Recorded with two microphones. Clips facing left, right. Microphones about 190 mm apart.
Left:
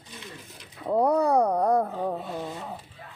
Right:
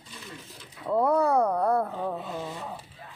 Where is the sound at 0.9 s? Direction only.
15° left (ahead or behind).